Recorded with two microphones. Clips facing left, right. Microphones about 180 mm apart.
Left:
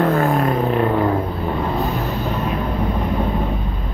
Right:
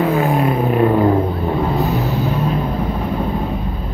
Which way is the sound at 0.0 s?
5° right (ahead or behind).